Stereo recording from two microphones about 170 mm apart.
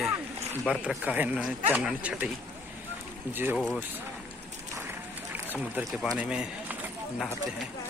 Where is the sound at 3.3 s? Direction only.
10° right (ahead or behind).